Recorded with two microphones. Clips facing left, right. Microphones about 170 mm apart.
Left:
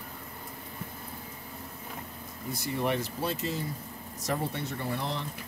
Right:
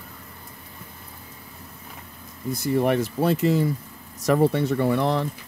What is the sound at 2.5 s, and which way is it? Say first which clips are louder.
Speech: right 9 dB; 55° right (ahead or behind).